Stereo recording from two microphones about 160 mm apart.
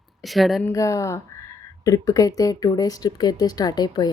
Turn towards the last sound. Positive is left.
turn(degrees=25)  # may be behind; listen again after turning